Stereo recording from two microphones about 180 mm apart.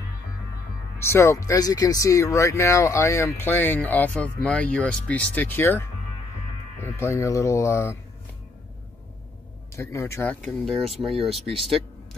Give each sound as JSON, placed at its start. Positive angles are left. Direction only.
{"t": 0.9, "sound": "speech", "side_deg": 15}
{"t": 9.8, "sound": "speech", "side_deg": 15}
{"t": 10.6, "sound": "speech", "side_deg": 0}